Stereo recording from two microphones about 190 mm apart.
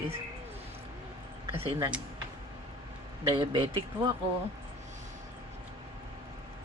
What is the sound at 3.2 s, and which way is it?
Speech, 30° right (ahead or behind).